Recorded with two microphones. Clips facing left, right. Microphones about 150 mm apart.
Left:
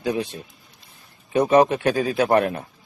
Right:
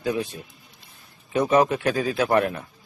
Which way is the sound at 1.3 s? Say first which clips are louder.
Left 3 dB; 35° left (ahead or behind).